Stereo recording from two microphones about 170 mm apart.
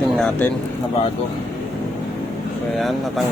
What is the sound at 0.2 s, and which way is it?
Speech, 5° left (ahead or behind).